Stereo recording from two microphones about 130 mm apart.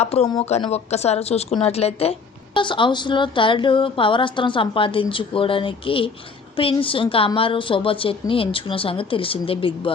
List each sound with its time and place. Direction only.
0.0 s a woman's voice: 55° left (ahead or behind)
2.6 s a woman's voice: 40° left (ahead or behind)